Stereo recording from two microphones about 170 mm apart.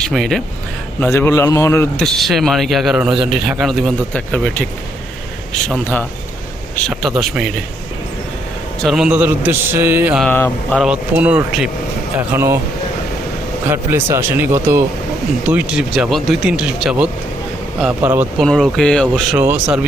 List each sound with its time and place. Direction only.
0.0 s speech: centre (ahead or behind)
0.9 s speech: 15° left (ahead or behind)
2.0 s a man's voice: centre (ahead or behind)
8.8 s a man's voice: centre (ahead or behind)
10.2 s speech: 10° left (ahead or behind)
10.8 s a man's voice: 5° right (ahead or behind)
13.7 s a man's voice: 15° right (ahead or behind)
18.4 s a man's voice: 5° left (ahead or behind)
19.4 s a man's voice: 10° right (ahead or behind)